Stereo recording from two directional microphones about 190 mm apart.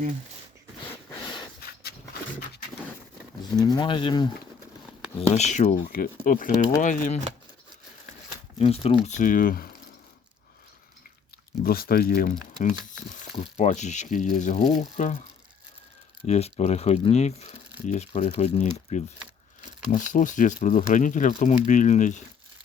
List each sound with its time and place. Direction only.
3.5 s speech: 20° left (ahead or behind)
5.3 s speech: 35° left (ahead or behind)
8.5 s speech: 30° left (ahead or behind); by 9.6 s 50° left (ahead or behind)
11.6 s speech: 50° left (ahead or behind)
13.3 s speech: 30° left (ahead or behind)
16.2 s speech: 35° left (ahead or behind)